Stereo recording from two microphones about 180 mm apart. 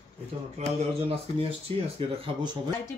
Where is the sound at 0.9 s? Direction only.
30° right (ahead or behind).